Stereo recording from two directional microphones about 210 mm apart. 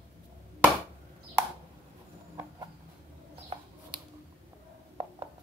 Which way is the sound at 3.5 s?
30° right (ahead or behind).